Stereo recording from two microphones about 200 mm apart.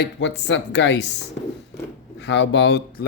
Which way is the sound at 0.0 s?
60° left (ahead or behind).